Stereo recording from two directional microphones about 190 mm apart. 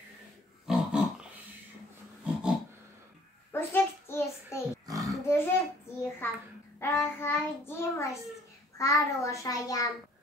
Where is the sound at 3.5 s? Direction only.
10° left (ahead or behind).